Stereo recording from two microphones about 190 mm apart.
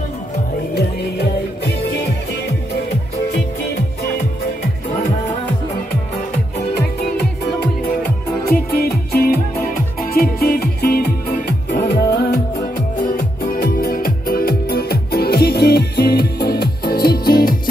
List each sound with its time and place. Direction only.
0.7 s music: 60° left (ahead or behind)
8.5 s music: 55° left (ahead or behind)